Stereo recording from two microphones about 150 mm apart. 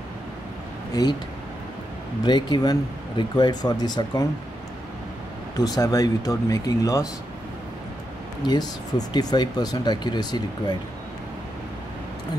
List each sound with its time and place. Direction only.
2.2 s speech: 30° left (ahead or behind)
5.6 s speech: 25° left (ahead or behind)
8.5 s speech: 30° left (ahead or behind)